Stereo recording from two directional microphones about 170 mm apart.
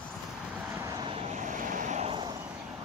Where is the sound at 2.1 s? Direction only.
25° right (ahead or behind).